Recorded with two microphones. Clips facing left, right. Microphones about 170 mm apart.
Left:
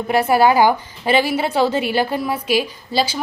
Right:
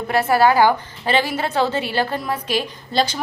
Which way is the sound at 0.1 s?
15° left (ahead or behind).